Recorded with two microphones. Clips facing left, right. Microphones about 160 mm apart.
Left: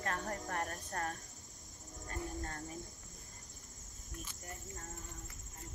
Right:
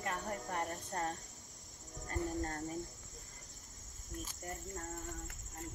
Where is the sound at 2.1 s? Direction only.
40° right (ahead or behind).